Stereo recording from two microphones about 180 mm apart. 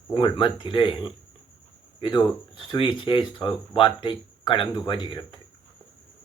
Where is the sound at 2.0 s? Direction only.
25° left (ahead or behind).